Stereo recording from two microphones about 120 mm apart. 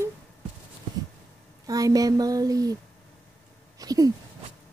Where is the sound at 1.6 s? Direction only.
30° right (ahead or behind).